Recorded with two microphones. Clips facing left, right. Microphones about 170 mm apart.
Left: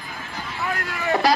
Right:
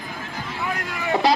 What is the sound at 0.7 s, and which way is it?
Vehicle, 20° right (ahead or behind).